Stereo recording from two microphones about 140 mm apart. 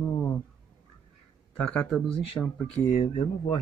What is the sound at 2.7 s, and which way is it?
Speech, 50° left (ahead or behind).